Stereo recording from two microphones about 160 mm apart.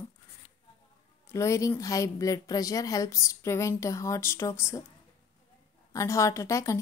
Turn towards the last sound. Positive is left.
turn(degrees=20)  # may be behind; listen again after turning